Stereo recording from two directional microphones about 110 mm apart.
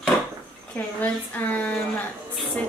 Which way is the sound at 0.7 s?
15° left (ahead or behind).